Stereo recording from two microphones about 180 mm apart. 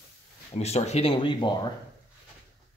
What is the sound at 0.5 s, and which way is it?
Speech, 35° left (ahead or behind).